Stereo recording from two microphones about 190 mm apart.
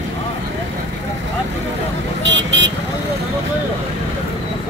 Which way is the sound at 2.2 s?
70° right (ahead or behind).